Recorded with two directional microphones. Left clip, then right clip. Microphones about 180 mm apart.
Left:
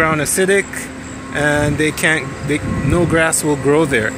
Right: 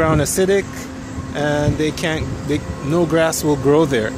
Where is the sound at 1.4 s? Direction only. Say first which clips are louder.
Left 3 dB; 5° left (ahead or behind).